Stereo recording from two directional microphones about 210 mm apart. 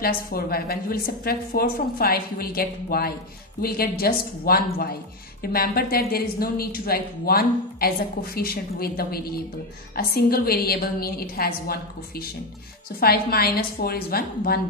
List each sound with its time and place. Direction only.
0.0 s speech: 45° left (ahead or behind)